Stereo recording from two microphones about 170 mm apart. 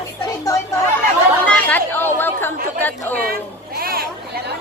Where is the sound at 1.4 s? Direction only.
10° left (ahead or behind).